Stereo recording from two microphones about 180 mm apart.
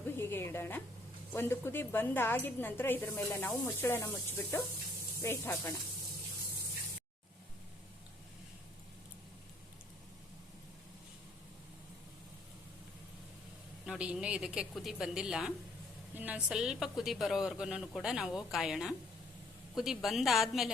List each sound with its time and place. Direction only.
0.2 s a sound: 15° left (ahead or behind)
1.3 s a woman's voice: 15° left (ahead or behind)
13.8 s a man's voice: 5° right (ahead or behind)